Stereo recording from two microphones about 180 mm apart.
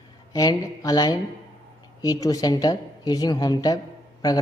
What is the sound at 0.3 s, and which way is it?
A man's voice, 20° left (ahead or behind).